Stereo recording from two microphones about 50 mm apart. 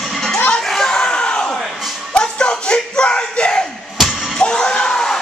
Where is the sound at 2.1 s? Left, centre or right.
Centre.